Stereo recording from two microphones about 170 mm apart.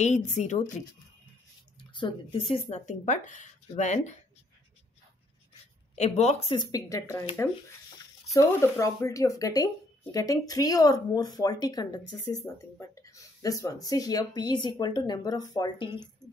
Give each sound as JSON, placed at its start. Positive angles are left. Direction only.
{"t": 0.0, "sound": "speech", "side_deg": 45}
{"t": 2.0, "sound": "speech", "side_deg": 30}
{"t": 5.9, "sound": "speech", "side_deg": 40}
{"t": 6.7, "sound": "speech", "side_deg": 20}
{"t": 8.3, "sound": "speech", "side_deg": 15}